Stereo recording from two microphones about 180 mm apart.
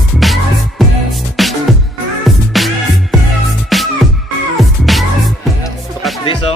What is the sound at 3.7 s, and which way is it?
Music, centre (ahead or behind).